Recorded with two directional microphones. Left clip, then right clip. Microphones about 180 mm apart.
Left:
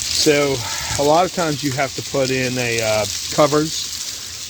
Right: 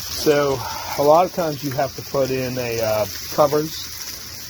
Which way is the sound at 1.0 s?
45° left (ahead or behind).